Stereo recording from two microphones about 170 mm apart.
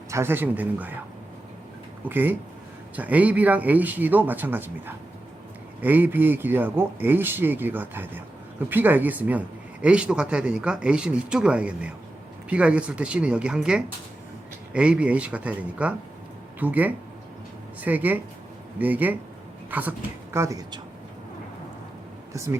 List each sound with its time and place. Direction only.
0.1 s a man's voice: 15° right (ahead or behind)
2.0 s a man's voice: 10° right (ahead or behind)
22.3 s speech: 15° right (ahead or behind)